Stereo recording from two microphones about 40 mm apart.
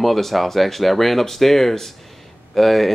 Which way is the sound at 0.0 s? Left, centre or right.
Centre.